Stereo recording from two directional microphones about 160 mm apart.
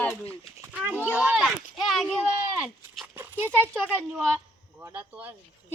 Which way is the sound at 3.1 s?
10° right (ahead or behind).